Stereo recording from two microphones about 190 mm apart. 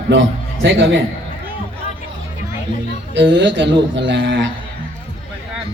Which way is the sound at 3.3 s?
70° right (ahead or behind).